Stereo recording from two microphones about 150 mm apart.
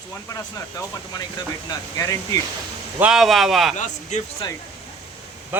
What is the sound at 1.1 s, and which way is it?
Speech, 25° left (ahead or behind).